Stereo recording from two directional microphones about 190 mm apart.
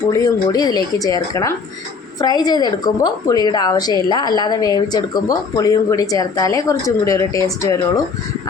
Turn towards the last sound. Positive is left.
turn(degrees=15)  # may be behind; listen again after turning